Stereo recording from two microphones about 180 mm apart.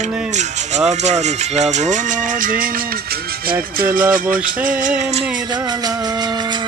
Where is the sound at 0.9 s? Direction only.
40° right (ahead or behind).